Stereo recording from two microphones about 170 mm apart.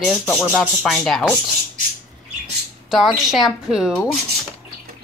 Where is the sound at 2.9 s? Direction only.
Centre (ahead or behind).